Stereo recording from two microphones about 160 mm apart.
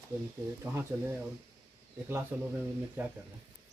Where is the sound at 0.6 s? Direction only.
15° right (ahead or behind).